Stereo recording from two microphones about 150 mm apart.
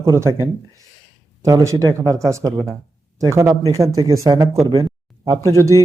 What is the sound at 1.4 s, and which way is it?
Speech, 20° right (ahead or behind).